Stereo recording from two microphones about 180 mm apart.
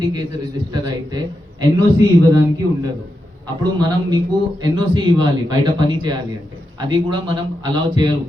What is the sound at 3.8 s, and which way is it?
A man's voice, 25° right (ahead or behind).